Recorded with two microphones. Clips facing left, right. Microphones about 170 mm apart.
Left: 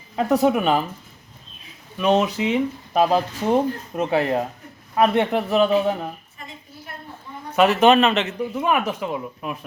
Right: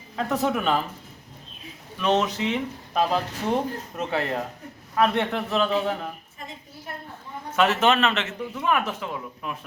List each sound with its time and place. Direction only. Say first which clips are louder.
0.2 s speech: left 6 dB; 10° left (ahead or behind)
2.0 s speech: left 4 dB; 10° left (ahead or behind)
7.5 s speech: left 6 dB; 15° left (ahead or behind)